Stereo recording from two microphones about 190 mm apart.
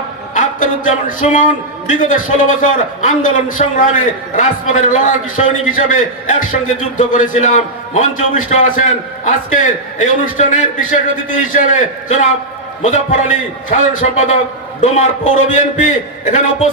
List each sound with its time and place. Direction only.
0.3 s music: 40° left (ahead or behind)
1.9 s a man's voice: 40° left (ahead or behind)